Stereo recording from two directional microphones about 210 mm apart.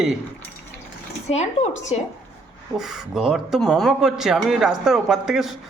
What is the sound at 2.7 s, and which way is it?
Speech, centre (ahead or behind).